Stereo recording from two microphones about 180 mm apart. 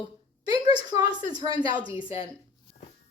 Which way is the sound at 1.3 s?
25° right (ahead or behind).